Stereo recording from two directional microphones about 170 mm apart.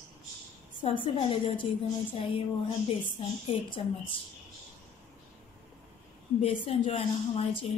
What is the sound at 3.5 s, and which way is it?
Speech, 30° left (ahead or behind).